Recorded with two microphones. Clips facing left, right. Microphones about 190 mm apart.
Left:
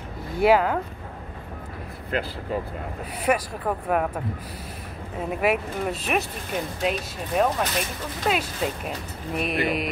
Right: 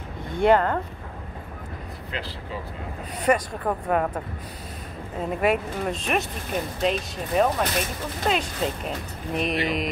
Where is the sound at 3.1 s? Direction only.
5° left (ahead or behind).